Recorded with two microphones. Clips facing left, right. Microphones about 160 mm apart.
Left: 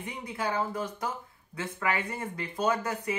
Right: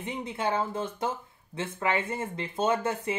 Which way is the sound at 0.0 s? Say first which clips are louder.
Right 3 dB; 25° right (ahead or behind).